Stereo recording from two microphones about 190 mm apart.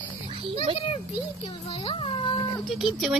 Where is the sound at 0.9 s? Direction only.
30° left (ahead or behind).